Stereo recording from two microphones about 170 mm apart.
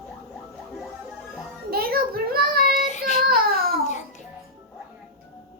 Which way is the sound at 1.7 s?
60° right (ahead or behind).